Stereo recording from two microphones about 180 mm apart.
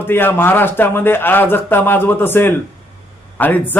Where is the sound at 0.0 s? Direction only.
10° left (ahead or behind).